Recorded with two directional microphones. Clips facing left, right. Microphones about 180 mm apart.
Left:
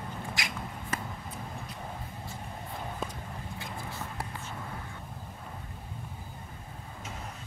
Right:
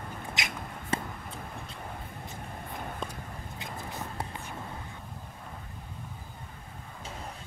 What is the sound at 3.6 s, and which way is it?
Vehicle, 20° right (ahead or behind).